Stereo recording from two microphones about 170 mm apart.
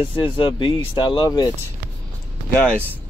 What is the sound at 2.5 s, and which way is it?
Speech, 10° left (ahead or behind).